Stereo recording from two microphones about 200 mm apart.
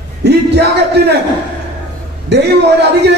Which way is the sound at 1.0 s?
55° right (ahead or behind).